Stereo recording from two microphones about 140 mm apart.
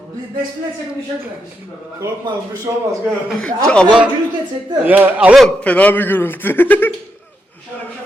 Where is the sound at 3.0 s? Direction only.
10° right (ahead or behind).